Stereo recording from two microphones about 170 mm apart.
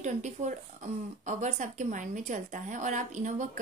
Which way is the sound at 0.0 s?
45° right (ahead or behind).